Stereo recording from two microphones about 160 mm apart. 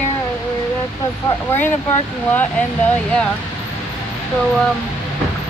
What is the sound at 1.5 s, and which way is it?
Speech, 10° left (ahead or behind).